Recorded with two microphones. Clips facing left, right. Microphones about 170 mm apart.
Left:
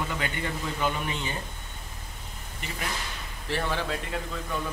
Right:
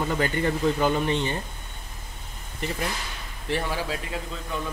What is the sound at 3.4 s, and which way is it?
Speech, 15° right (ahead or behind).